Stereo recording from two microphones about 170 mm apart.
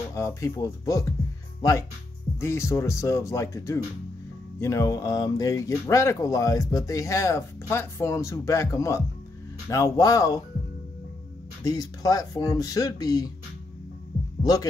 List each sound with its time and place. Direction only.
0.1 s speech: 15° left (ahead or behind)
11.6 s speech: 20° left (ahead or behind)
14.4 s speech: 20° left (ahead or behind)